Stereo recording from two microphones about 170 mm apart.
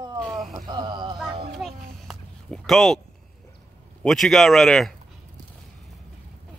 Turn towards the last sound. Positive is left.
turn(degrees=0)  # may be behind; listen again after turning